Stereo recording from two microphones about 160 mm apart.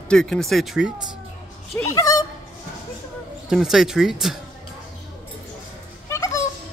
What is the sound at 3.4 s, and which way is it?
Speech, centre (ahead or behind).